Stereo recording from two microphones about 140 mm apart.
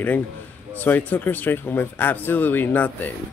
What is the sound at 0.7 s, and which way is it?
Speech, 15° left (ahead or behind).